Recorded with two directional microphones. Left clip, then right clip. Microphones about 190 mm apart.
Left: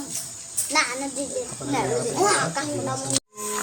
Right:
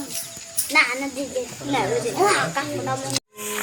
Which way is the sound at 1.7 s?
30° right (ahead or behind).